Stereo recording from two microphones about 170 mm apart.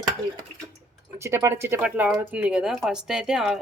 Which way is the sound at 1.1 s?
15° right (ahead or behind).